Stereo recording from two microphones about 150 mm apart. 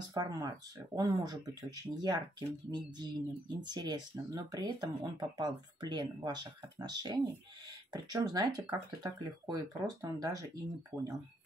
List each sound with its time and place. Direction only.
0.1 s speech: 25° right (ahead or behind)